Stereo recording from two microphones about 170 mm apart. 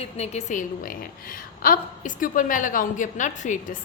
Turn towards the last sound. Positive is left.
turn(degrees=45)  # may be behind; listen again after turning